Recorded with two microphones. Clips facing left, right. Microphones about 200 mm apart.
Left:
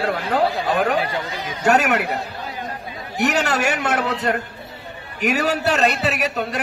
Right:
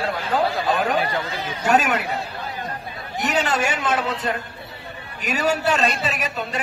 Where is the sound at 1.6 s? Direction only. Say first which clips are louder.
Left 2 dB; 70° left (ahead or behind).